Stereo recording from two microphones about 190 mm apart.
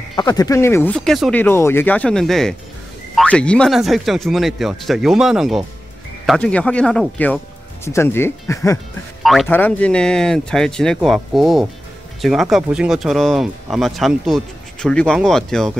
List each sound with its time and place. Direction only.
0.1 s speech: 20° left (ahead or behind)
9.2 s speech: centre (ahead or behind)